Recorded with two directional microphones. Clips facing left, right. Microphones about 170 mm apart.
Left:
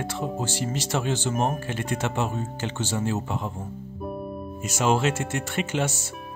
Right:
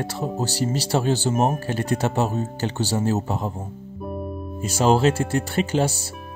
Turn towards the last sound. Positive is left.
turn(degrees=-35)  # may be behind; listen again after turning